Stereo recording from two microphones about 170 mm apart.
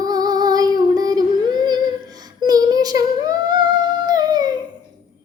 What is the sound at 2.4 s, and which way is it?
Humming, 20° right (ahead or behind).